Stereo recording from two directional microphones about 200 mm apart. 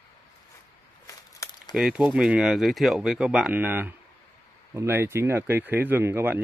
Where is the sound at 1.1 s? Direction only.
15° left (ahead or behind).